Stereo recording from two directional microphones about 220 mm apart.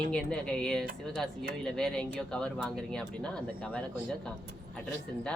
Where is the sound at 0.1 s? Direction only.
5° left (ahead or behind).